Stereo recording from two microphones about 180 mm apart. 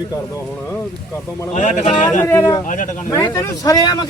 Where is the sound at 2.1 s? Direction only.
15° left (ahead or behind).